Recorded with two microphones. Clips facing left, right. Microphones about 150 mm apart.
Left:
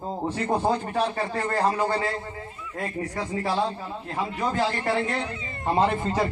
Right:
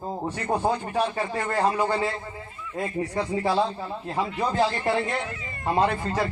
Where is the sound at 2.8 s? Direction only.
20° right (ahead or behind).